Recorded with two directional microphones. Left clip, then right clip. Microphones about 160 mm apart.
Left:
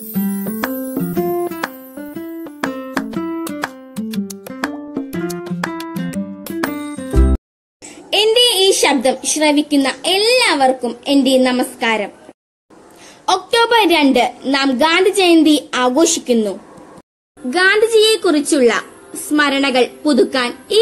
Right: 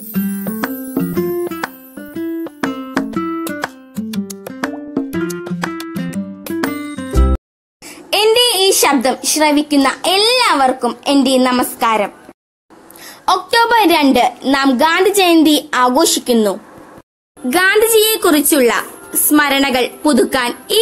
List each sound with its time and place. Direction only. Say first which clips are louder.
0.1 s music: right 1 dB; centre (ahead or behind)
8.2 s a woman's voice: even; 15° right (ahead or behind)
13.2 s a woman's voice: right 2 dB; 25° right (ahead or behind)
17.5 s a woman's voice: right 1 dB; 20° right (ahead or behind)